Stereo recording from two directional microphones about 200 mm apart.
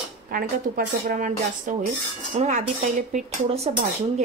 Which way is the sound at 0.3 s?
45° right (ahead or behind).